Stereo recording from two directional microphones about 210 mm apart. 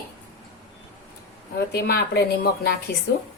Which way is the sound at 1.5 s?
50° left (ahead or behind).